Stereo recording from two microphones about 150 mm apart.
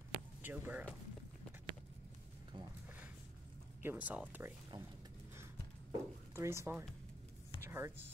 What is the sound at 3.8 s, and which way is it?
Speech, 10° right (ahead or behind).